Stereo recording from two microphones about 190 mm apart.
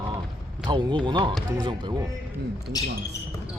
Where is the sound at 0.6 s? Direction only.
25° right (ahead or behind).